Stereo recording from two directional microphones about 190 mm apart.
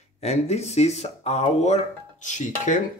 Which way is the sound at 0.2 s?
35° left (ahead or behind).